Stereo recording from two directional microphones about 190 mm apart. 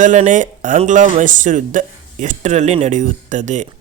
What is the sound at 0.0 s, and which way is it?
Speech, 40° right (ahead or behind).